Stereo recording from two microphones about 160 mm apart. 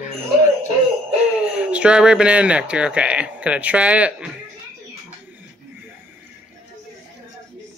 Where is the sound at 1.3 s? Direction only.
5° right (ahead or behind).